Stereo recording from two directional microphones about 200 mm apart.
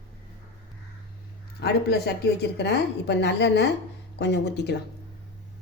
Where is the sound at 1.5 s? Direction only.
55° left (ahead or behind).